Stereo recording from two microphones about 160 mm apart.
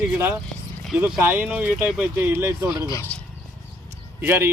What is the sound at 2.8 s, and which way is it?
Speech, 20° left (ahead or behind).